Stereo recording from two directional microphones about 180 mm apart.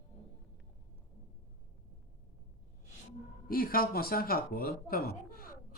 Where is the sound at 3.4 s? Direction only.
55° left (ahead or behind).